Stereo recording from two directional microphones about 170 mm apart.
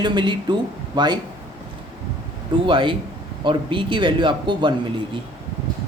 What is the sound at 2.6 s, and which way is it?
Speech, 30° right (ahead or behind).